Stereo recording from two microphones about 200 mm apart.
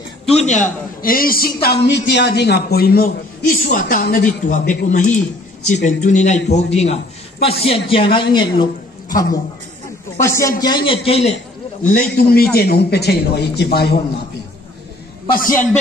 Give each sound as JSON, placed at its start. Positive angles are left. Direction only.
{"t": 0.3, "sound": "a man's voice", "side_deg": 35}
{"t": 11.8, "sound": "a man's voice", "side_deg": 40}